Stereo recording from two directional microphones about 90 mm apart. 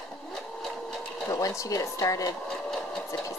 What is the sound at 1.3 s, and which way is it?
Speech, 40° left (ahead or behind).